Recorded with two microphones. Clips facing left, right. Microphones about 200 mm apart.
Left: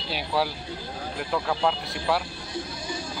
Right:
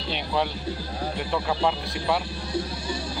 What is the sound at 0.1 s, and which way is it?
Speech, 5° left (ahead or behind).